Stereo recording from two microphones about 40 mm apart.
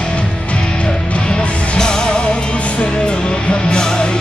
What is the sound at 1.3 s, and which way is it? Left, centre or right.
Music, centre.